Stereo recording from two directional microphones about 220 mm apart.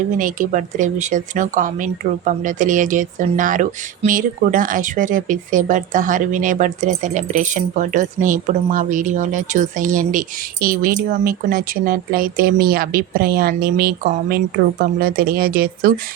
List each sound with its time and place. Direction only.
0.2 s speech: 35° right (ahead or behind)